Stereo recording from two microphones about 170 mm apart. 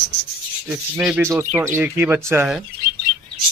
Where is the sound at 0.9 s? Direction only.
5° right (ahead or behind).